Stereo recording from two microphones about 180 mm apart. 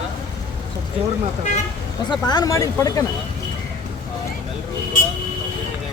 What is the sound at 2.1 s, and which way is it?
Speech, 25° left (ahead or behind).